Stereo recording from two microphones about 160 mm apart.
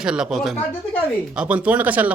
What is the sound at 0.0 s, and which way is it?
A man's voice, 5° right (ahead or behind).